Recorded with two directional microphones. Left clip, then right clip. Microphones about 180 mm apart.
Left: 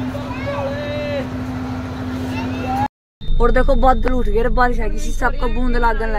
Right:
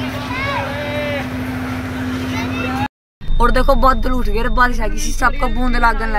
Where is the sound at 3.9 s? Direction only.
10° left (ahead or behind).